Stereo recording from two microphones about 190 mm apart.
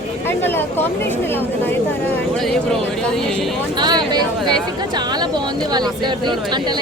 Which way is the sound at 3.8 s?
20° right (ahead or behind).